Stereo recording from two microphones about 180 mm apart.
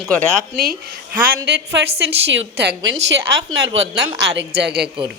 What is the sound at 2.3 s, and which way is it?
Speech, 90° right.